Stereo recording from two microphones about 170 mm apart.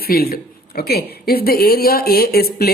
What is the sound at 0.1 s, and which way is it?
A woman's voice, 60° left (ahead or behind).